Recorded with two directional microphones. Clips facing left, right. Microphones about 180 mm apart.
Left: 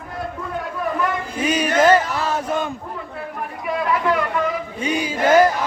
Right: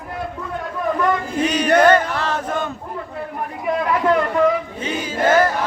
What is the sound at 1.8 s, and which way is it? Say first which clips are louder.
Choir: right 1 dB; 10° left (ahead or behind).